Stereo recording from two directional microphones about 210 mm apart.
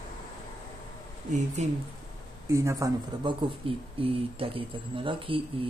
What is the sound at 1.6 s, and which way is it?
Speech, 30° right (ahead or behind).